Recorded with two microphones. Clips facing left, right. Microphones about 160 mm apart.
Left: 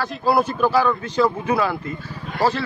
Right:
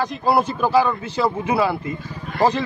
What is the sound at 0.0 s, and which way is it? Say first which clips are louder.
Speech: even; 15° right (ahead or behind).